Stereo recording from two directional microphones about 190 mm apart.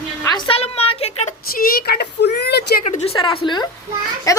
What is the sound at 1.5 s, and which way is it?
Speech, 55° left (ahead or behind).